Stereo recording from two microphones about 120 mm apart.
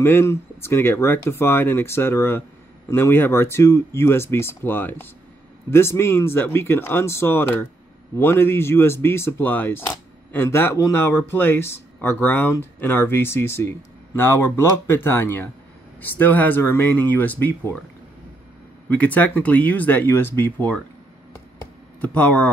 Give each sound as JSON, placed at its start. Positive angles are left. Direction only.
{"t": 0.0, "sound": "speech", "side_deg": 20}
{"t": 18.9, "sound": "speech", "side_deg": 10}
{"t": 22.0, "sound": "speech", "side_deg": 10}